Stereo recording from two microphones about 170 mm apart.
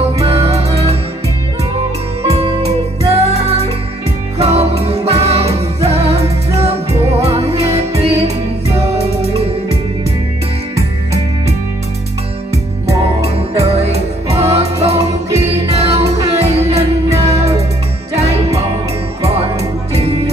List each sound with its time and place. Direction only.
0.2 s music: 35° right (ahead or behind)
2.2 s music: 35° right (ahead or behind)
6.9 s music: 15° right (ahead or behind)
7.2 s music: 35° right (ahead or behind)
13.2 s music: 40° right (ahead or behind)
15.0 s music: 20° right (ahead or behind)
15.6 s music: 35° right (ahead or behind)
17.3 s music: 20° right (ahead or behind)
18.1 s music: 40° right (ahead or behind)